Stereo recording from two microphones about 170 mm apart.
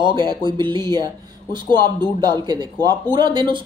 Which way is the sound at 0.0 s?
25° right (ahead or behind).